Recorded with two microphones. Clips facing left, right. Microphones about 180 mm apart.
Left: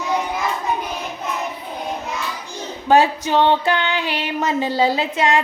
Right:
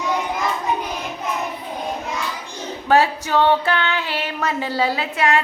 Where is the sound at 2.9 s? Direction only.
20° left (ahead or behind).